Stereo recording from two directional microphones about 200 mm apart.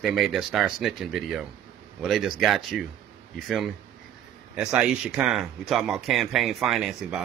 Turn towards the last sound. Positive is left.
turn(degrees=-5)  # may be behind; listen again after turning